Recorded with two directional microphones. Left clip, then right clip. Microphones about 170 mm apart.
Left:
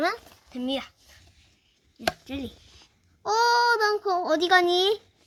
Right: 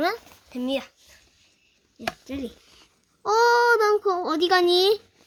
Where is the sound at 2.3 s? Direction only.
15° right (ahead or behind).